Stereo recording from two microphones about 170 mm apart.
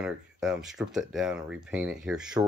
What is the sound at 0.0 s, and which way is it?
Speech, 5° right (ahead or behind).